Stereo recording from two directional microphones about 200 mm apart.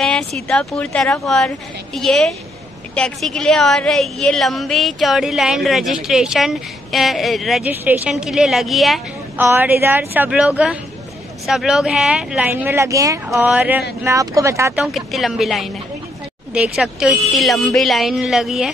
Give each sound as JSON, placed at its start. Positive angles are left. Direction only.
{"t": 0.0, "sound": "a woman's voice", "side_deg": 5}
{"t": 14.8, "sound": "a woman's voice", "side_deg": 0}